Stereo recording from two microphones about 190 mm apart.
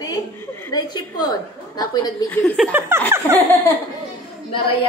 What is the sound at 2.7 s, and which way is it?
Speech, 10° right (ahead or behind).